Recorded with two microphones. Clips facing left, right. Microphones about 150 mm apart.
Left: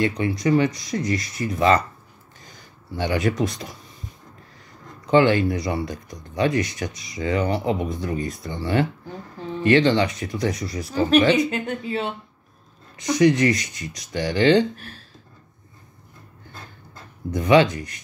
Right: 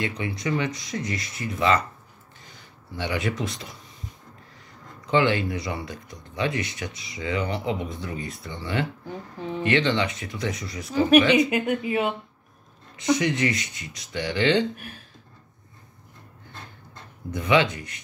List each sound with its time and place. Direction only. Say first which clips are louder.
0.0 s speech: left 7 dB; 40° left (ahead or behind)
3.0 s speech: left 5 dB; 40° left (ahead or behind)
5.1 s speech: left 5 dB; 40° left (ahead or behind)
11.3 s speech: right 1 dB; 10° right (ahead or behind)
13.1 s speech: left 5 dB; 40° left (ahead or behind)
14.8 s speech: even; 15° right (ahead or behind)
17.3 s speech: left 5 dB; 40° left (ahead or behind)